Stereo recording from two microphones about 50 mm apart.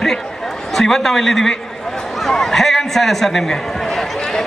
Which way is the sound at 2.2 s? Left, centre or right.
Centre.